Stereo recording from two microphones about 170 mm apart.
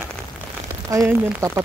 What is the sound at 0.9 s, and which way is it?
Speech, 20° right (ahead or behind).